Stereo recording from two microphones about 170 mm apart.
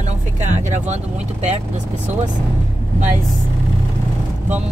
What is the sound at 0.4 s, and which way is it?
Vehicle, 45° right (ahead or behind).